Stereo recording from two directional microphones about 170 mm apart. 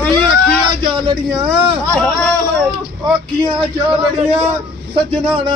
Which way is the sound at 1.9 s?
5° left (ahead or behind).